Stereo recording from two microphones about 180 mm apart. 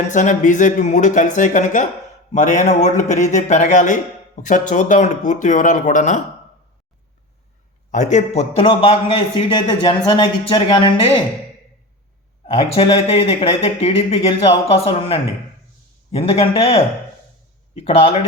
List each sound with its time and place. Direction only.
0.1 s speech: 45° left (ahead or behind)
7.9 s a man's voice: 40° left (ahead or behind)
12.5 s speech: 30° left (ahead or behind)
17.8 s speech: 35° left (ahead or behind)